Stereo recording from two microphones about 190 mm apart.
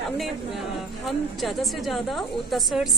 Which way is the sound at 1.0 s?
Centre (ahead or behind).